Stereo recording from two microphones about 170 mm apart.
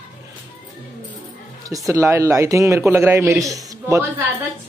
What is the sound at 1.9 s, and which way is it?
A man's voice, 20° right (ahead or behind).